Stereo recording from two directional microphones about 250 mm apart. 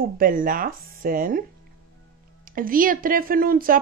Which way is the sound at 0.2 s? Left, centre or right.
Right.